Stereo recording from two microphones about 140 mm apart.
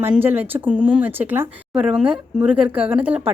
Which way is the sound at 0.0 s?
15° right (ahead or behind).